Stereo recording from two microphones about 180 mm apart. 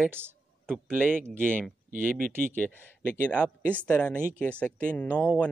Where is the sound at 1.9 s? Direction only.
50° right (ahead or behind).